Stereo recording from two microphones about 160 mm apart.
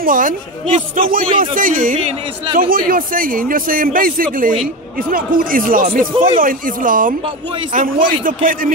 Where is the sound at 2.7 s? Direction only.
60° right (ahead or behind).